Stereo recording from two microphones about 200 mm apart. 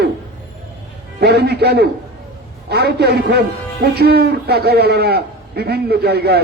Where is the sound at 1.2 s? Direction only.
55° right (ahead or behind).